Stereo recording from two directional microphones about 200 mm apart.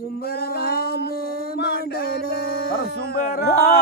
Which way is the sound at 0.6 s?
50° left (ahead or behind).